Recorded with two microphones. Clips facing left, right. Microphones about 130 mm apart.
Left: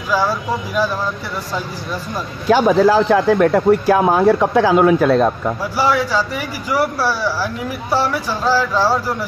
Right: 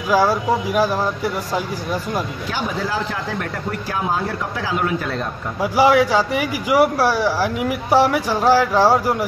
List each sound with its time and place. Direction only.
0.2 s speech: 15° right (ahead or behind)
2.5 s speech: 90° left
2.9 s speech: 75° left (ahead or behind)
5.6 s speech: 15° right (ahead or behind)